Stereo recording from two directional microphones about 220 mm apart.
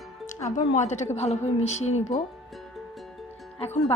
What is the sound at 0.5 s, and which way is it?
A woman's voice, 30° left (ahead or behind).